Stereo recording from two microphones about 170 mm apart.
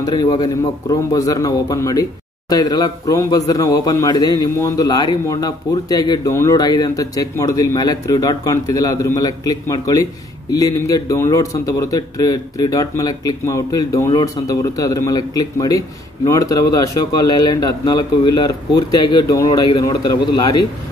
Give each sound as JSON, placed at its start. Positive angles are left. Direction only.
{"t": 0.0, "sound": "a man's voice", "side_deg": 25}